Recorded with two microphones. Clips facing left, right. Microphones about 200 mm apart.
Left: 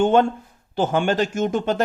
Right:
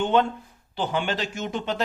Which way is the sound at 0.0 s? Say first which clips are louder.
Left 5 dB; 45° left (ahead or behind).